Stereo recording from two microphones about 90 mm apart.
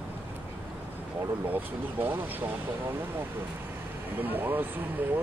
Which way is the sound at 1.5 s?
20° right (ahead or behind).